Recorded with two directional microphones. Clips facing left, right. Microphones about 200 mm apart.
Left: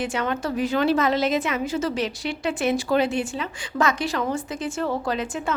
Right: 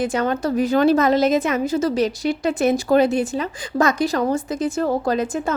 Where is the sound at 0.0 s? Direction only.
40° right (ahead or behind).